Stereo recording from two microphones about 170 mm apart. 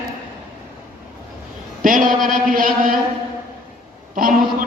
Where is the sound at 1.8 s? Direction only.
55° right (ahead or behind).